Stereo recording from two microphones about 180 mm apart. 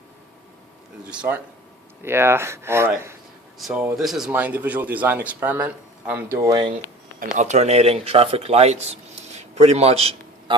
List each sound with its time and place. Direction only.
1.1 s speech: 5° right (ahead or behind)
6.4 s speech: 25° right (ahead or behind)
7.3 s speech: 40° right (ahead or behind)